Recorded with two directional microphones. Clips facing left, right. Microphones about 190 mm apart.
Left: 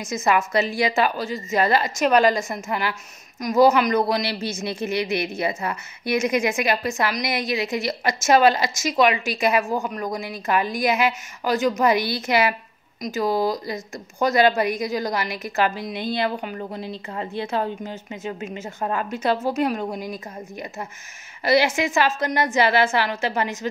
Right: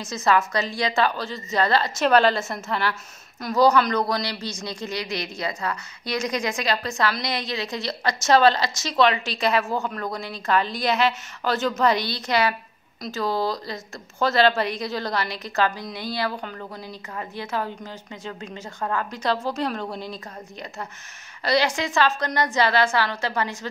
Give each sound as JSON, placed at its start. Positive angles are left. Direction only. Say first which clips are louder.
{"t": 0.1, "sound": "a woman's voice", "louder": "left 1 dB", "side_deg": 20}
{"t": 13.0, "sound": "a woman's voice", "louder": "left 3 dB", "side_deg": 20}
{"t": 21.7, "sound": "a woman's voice", "louder": "left 1 dB", "side_deg": 15}